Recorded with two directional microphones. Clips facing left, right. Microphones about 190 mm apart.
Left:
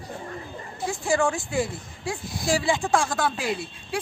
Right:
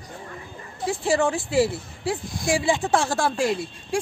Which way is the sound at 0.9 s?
25° right (ahead or behind).